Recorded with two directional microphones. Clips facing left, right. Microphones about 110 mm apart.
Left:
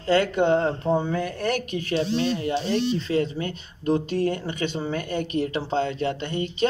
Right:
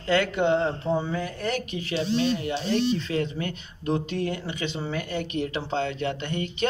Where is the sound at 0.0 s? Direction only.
40° left (ahead or behind).